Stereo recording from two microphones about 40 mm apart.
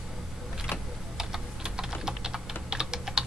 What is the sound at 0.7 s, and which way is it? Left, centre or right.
Typing, centre.